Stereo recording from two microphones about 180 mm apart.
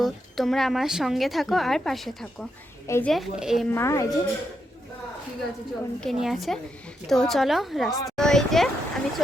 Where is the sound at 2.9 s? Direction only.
10° left (ahead or behind).